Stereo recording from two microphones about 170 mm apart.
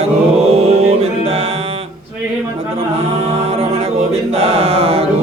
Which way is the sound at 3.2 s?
35° right (ahead or behind).